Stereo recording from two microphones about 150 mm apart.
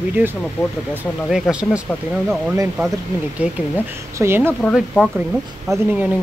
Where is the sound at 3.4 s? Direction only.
10° right (ahead or behind).